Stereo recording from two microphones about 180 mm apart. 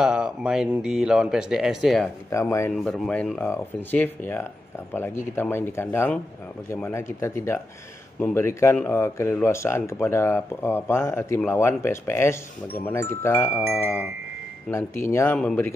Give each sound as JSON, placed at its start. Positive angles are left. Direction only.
{"t": 0.0, "sound": "speech", "side_deg": -5}
{"t": 2.3, "sound": "speech", "side_deg": 15}
{"t": 2.7, "sound": "speech", "side_deg": 0}
{"t": 5.3, "sound": "speech", "side_deg": 15}